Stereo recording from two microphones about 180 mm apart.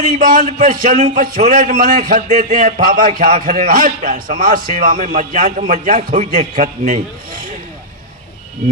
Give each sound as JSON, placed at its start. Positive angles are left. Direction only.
{"t": 0.0, "sound": "a man's voice", "side_deg": -50}